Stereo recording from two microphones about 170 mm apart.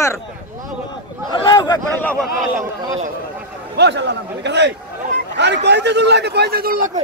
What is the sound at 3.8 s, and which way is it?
A man's voice, 90° right.